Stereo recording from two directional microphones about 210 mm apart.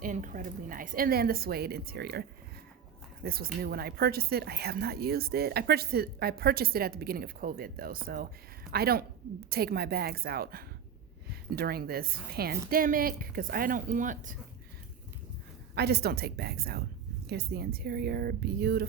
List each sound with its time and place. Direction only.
0.0 s speech: 40° right (ahead or behind)
3.2 s speech: 45° right (ahead or behind)
15.7 s speech: 50° right (ahead or behind)